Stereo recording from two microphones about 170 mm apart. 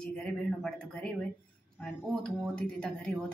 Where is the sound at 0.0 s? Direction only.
5° left (ahead or behind).